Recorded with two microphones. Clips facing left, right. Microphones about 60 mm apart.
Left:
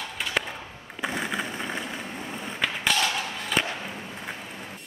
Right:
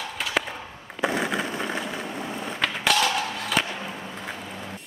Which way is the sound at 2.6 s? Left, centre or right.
Centre.